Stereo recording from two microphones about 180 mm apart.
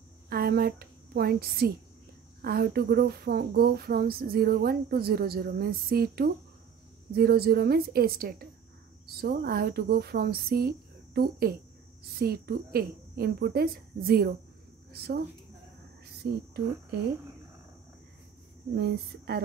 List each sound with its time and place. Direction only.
0.3 s a woman's voice: 60° right (ahead or behind)
18.8 s speech: 60° right (ahead or behind)